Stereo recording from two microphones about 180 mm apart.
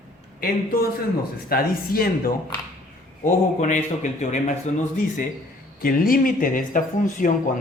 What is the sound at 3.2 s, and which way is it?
Speech, 45° left (ahead or behind).